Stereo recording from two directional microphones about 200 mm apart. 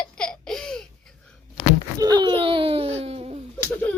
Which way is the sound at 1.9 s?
20° right (ahead or behind).